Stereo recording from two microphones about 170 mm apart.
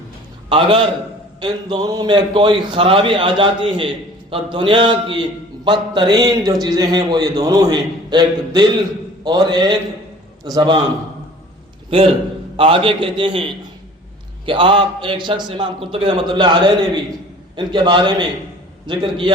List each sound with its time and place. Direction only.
0.5 s a man's voice: 30° right (ahead or behind)
11.9 s a man's voice: 30° right (ahead or behind)